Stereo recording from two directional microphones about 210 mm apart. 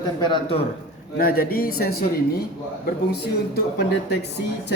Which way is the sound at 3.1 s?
50° left (ahead or behind).